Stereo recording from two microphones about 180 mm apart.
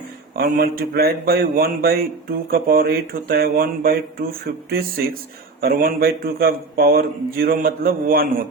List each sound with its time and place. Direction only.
0.3 s speech: 60° right (ahead or behind)